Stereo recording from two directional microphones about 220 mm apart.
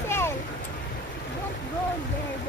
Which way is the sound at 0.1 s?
10° left (ahead or behind).